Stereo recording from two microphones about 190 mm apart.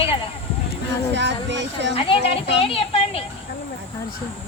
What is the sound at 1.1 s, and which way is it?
Speech, 65° right (ahead or behind).